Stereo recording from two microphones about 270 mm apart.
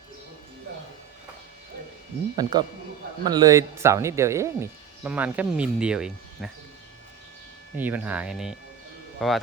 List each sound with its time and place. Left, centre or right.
2.3 s speech: centre
7.8 s speech: centre